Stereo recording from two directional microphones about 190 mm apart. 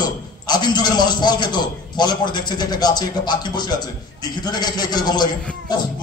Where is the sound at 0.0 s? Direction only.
20° left (ahead or behind).